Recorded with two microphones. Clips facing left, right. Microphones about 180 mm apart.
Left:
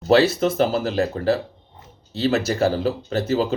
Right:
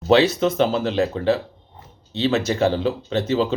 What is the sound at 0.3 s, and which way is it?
Speech, 40° left (ahead or behind).